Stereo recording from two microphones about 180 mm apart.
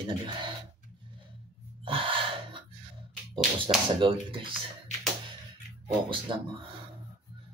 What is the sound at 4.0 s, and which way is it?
Speech, 30° right (ahead or behind).